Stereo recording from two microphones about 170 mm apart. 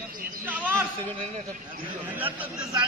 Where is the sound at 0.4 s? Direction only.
10° right (ahead or behind).